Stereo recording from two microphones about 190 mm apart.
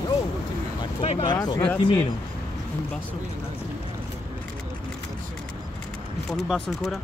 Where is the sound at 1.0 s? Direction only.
30° left (ahead or behind).